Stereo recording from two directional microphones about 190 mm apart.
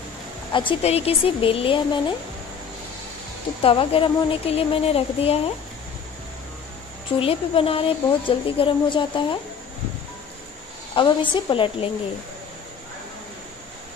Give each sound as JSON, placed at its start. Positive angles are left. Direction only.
{"t": 0.5, "sound": "speech", "side_deg": 25}
{"t": 3.6, "sound": "speech", "side_deg": 25}
{"t": 7.2, "sound": "speech", "side_deg": 30}
{"t": 11.0, "sound": "speech", "side_deg": 25}